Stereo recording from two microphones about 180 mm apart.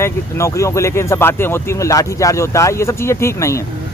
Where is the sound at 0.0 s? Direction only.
15° left (ahead or behind).